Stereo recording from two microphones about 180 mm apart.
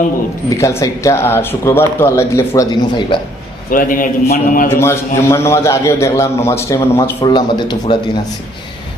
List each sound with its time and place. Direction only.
0.5 s speech: 15° left (ahead or behind)
3.7 s a man's voice: 50° left (ahead or behind)
4.7 s a man's voice: 15° left (ahead or behind)